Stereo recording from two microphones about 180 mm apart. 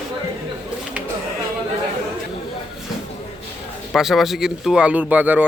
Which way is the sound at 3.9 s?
Centre (ahead or behind).